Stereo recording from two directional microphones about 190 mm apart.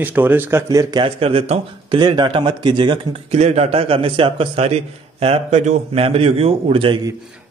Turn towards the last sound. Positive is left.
turn(degrees=-25)  # may be behind; listen again after turning